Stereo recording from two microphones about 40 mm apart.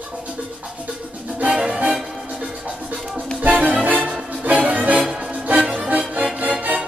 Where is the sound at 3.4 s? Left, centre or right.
Right.